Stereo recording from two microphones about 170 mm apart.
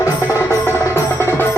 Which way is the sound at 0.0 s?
15° left (ahead or behind).